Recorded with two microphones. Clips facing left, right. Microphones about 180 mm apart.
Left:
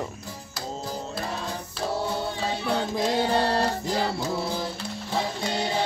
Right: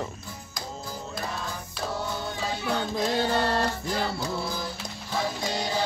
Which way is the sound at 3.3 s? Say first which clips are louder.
Left 2 dB; 35° left (ahead or behind).